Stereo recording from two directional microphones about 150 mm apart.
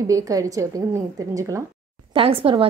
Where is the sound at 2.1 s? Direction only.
40° right (ahead or behind).